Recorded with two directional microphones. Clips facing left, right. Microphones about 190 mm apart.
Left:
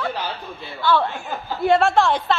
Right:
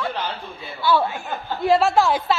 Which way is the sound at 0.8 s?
10° right (ahead or behind).